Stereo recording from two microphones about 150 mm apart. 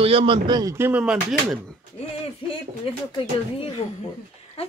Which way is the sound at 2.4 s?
35° left (ahead or behind).